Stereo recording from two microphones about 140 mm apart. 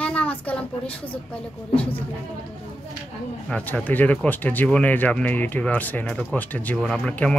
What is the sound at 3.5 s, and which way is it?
Speech, 5° left (ahead or behind).